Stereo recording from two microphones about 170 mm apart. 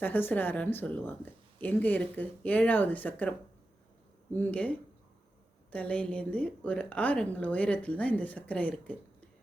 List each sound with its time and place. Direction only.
0.0 s a woman's voice: 10° left (ahead or behind)
4.4 s a woman's voice: 10° left (ahead or behind)